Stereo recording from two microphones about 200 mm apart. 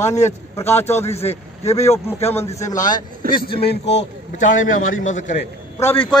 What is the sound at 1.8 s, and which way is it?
Speech, 30° left (ahead or behind).